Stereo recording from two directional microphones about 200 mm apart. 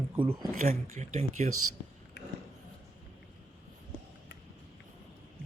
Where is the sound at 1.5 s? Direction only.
90° right.